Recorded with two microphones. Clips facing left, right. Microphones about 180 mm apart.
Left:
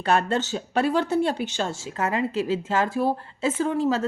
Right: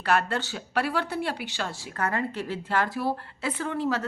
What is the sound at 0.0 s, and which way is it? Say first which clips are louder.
Speech: left 3 dB; 25° left (ahead or behind).